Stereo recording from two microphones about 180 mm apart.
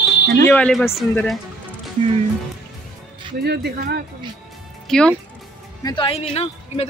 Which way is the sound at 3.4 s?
65° right (ahead or behind).